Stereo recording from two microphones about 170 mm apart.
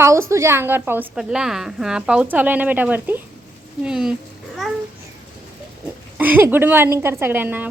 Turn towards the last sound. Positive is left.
turn(degrees=-10)  # may be behind; listen again after turning